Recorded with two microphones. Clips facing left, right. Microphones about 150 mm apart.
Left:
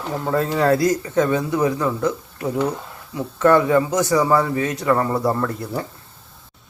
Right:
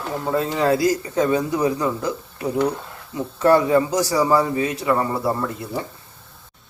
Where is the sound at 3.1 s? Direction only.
35° right (ahead or behind).